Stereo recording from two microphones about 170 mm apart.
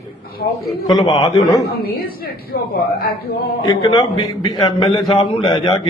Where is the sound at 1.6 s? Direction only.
65° left (ahead or behind).